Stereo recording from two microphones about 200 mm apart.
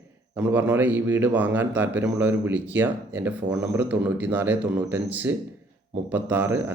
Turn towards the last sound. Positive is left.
turn(degrees=-10)  # may be behind; listen again after turning